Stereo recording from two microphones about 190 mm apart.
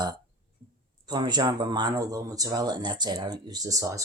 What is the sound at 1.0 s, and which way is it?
Speech, 20° right (ahead or behind).